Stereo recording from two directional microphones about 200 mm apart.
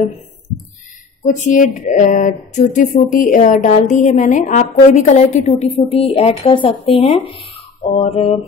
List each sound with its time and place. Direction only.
1.2 s a woman's voice: 40° left (ahead or behind)